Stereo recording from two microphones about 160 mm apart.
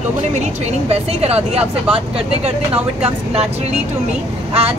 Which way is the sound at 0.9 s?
40° right (ahead or behind).